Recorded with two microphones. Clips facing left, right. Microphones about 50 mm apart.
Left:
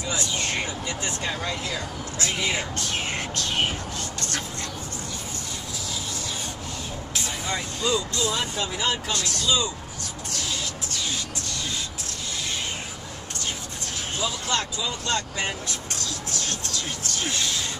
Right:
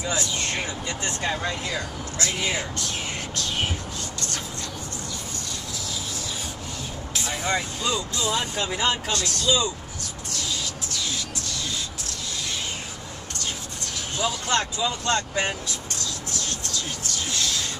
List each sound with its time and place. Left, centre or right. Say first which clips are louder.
0.0 s speech: right 1 dB; centre
1.4 s speech: right 1 dB; right
2.7 s speech: left 2 dB; left
7.5 s speech: left 3 dB; centre
8.5 s speech: right 2 dB; right
14.2 s speech: right 3 dB; right
17.4 s music: even; centre